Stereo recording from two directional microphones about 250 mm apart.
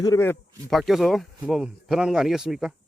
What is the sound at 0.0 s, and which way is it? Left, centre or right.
Speech, centre.